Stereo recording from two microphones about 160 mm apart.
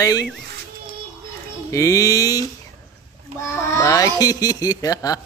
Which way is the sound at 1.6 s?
20° left (ahead or behind).